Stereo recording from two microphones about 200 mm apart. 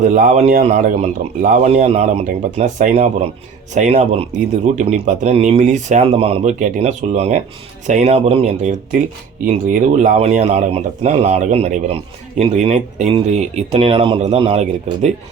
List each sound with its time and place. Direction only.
0.0 s a man's voice: 40° right (ahead or behind)